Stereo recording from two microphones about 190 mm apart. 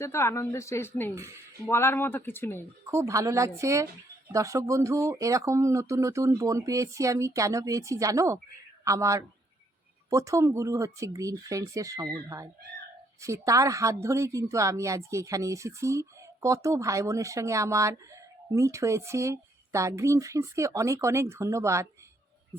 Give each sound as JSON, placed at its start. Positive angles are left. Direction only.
{"t": 0.0, "sound": "a woman's voice", "side_deg": 15}
{"t": 1.1, "sound": "a woman's voice", "side_deg": -15}
{"t": 1.6, "sound": "a woman's voice", "side_deg": 10}
{"t": 2.9, "sound": "a woman's voice", "side_deg": -15}